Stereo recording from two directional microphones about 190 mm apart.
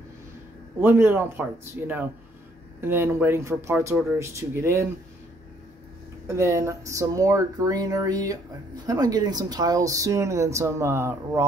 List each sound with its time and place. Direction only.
0.7 s speech: 10° right (ahead or behind)
6.2 s speech: 15° right (ahead or behind)